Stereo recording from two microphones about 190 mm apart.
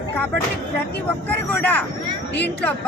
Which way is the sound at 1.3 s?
10° left (ahead or behind).